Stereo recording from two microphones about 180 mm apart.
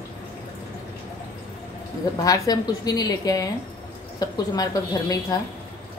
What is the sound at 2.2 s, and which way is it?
A woman's voice, 20° left (ahead or behind).